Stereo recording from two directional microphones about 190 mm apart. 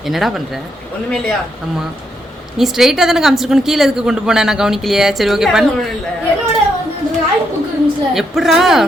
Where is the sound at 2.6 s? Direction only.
Centre (ahead or behind).